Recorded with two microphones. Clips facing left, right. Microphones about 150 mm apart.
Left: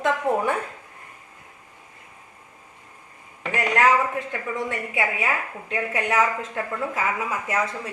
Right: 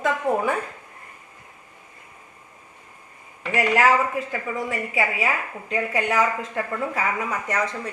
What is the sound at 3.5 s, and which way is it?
A woman's voice, 5° right (ahead or behind).